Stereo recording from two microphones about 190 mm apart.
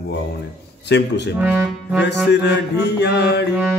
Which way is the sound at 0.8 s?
65° left (ahead or behind).